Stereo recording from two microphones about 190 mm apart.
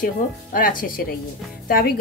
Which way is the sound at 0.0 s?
45° left (ahead or behind).